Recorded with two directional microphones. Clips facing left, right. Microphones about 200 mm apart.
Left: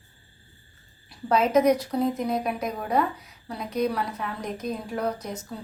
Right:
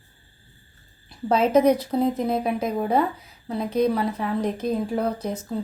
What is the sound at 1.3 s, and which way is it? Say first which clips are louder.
A woman's voice: right 2 dB; 30° right (ahead or behind).